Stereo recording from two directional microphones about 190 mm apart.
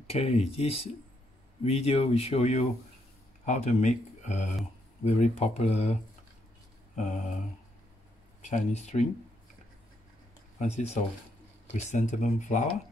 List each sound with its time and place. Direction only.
0.0 s speech: 30° left (ahead or behind)
7.0 s speech: 40° left (ahead or behind)
8.4 s speech: 35° left (ahead or behind)
10.6 s speech: 40° left (ahead or behind)